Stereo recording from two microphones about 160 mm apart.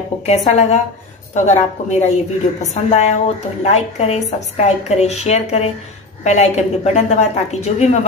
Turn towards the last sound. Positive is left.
turn(degrees=45)  # may be behind; listen again after turning